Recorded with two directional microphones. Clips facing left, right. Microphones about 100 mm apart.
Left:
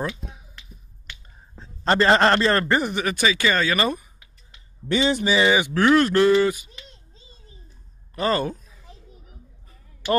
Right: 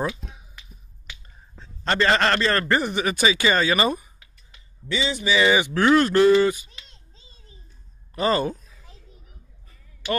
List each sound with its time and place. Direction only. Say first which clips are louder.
1.1 s finger snapping: left 2 dB; 10° left (ahead or behind)
1.9 s a man's voice: left 3 dB; 25° left (ahead or behind)
2.7 s speech: even; 5° left (ahead or behind)
3.0 s speech: right 1 dB; 10° right (ahead or behind)
4.8 s speech: left 5 dB; 55° left (ahead or behind)
5.7 s speech: even; 5° right (ahead or behind)
6.4 s speech: even; 10° left (ahead or behind)
8.1 s speech: right 1 dB; 5° right (ahead or behind)